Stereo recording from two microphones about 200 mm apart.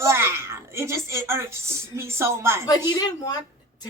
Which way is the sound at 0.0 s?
15° right (ahead or behind).